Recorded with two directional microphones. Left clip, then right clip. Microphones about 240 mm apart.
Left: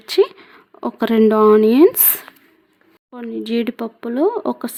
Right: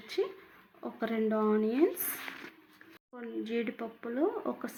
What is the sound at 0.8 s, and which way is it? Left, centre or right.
Speech, left.